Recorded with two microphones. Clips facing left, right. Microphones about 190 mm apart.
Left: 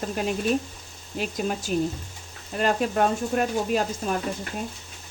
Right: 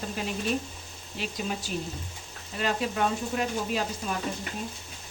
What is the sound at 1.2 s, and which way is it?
Speech, 45° left (ahead or behind).